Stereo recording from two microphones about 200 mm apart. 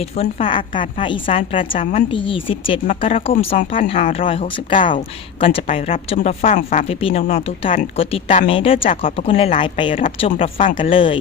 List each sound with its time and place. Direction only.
0.0 s speech: 30° left (ahead or behind)
6.5 s speech: 40° left (ahead or behind)